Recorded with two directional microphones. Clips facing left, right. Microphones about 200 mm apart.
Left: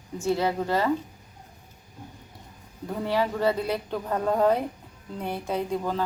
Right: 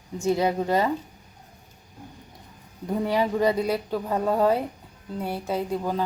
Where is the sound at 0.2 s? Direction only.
15° right (ahead or behind).